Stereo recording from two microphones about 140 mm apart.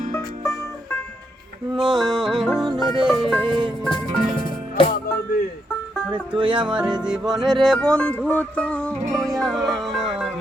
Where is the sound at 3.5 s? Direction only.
35° right (ahead or behind).